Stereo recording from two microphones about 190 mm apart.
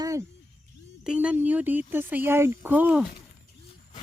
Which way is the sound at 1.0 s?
5° right (ahead or behind).